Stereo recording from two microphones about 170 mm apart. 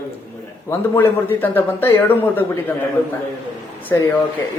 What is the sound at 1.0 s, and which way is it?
Speech, 10° left (ahead or behind).